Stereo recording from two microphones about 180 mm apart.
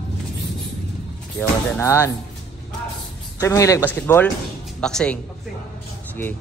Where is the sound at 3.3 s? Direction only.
15° left (ahead or behind).